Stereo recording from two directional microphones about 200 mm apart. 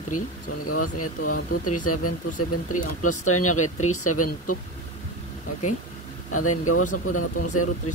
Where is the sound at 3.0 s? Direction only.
90° left.